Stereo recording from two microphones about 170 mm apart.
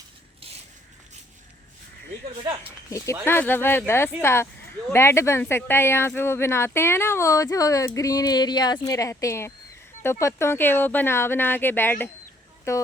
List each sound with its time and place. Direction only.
2.6 s speech: 15° left (ahead or behind)